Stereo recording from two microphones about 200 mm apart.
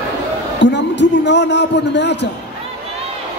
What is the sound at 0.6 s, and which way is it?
A man's voice, 60° left (ahead or behind).